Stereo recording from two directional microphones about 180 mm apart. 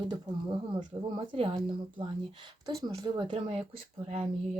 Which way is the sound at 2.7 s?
20° right (ahead or behind).